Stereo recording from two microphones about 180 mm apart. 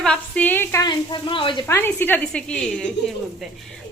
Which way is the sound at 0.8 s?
25° left (ahead or behind).